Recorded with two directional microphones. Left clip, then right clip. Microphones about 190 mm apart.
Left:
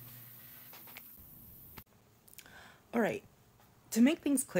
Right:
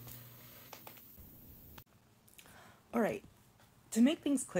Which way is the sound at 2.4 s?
15° left (ahead or behind).